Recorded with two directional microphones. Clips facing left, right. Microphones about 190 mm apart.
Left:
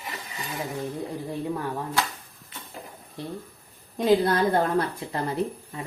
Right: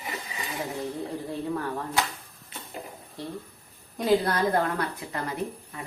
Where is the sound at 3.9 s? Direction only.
25° left (ahead or behind).